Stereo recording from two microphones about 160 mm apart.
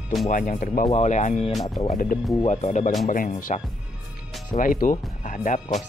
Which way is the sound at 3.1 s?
60° left (ahead or behind).